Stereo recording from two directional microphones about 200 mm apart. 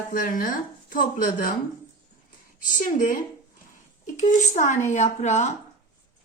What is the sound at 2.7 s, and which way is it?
Speech, 40° left (ahead or behind).